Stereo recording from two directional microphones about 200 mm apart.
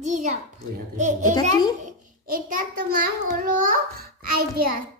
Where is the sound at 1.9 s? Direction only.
40° right (ahead or behind).